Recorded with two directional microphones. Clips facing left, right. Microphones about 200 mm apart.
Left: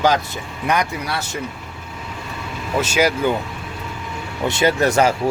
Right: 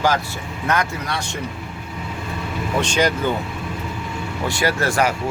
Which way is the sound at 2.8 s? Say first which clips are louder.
Left 2 dB; 5° left (ahead or behind).